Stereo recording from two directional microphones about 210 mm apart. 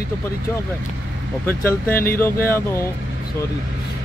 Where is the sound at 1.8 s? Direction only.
45° left (ahead or behind).